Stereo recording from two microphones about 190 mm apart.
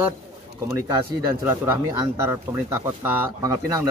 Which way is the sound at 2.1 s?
15° right (ahead or behind).